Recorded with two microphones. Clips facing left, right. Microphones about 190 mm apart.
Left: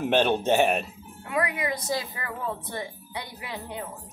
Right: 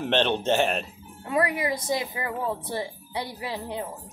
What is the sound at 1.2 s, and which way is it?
A woman's voice, 30° right (ahead or behind).